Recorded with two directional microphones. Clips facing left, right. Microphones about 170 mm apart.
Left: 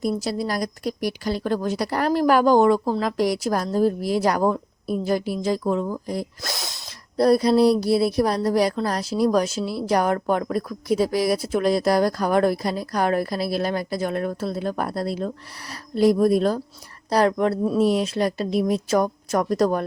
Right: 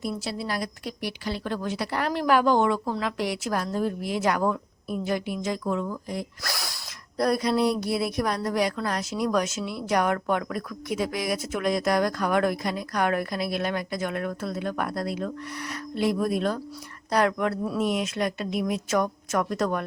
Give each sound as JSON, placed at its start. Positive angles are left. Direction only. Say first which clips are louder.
{"t": 0.0, "sound": "speech", "louder": "left 6 dB", "side_deg": 40}
{"t": 6.4, "sound": "speech", "louder": "left 2 dB", "side_deg": 20}